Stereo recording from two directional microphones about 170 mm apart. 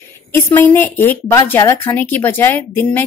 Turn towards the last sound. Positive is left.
turn(degrees=10)  # may be behind; listen again after turning